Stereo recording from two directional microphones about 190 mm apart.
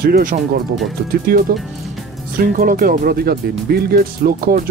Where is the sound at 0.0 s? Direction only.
50° right (ahead or behind).